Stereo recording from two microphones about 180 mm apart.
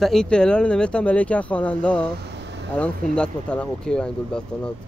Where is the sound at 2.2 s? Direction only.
75° right (ahead or behind).